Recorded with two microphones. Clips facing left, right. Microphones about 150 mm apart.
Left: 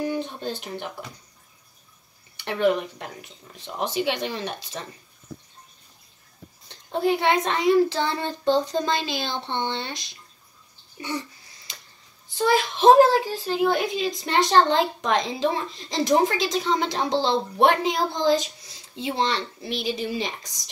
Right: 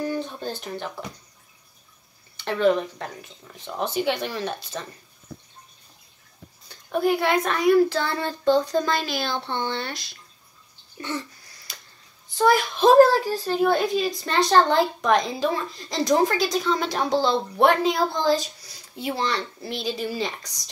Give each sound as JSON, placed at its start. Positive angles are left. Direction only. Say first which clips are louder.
{"t": 0.0, "sound": "speech", "louder": "even", "side_deg": 20}
{"t": 2.4, "sound": "a child's voice", "louder": "right 1 dB", "side_deg": 15}
{"t": 6.7, "sound": "a child's voice", "louder": "right 1 dB", "side_deg": 25}
{"t": 11.0, "sound": "a sound", "louder": "even", "side_deg": 15}
{"t": 12.4, "sound": "a child's voice", "louder": "right 2 dB", "side_deg": 20}